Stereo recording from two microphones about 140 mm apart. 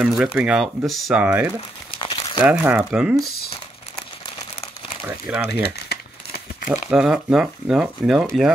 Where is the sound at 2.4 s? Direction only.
15° right (ahead or behind).